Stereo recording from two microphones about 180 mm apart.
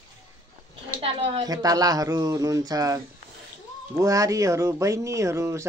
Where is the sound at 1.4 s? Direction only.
20° right (ahead or behind).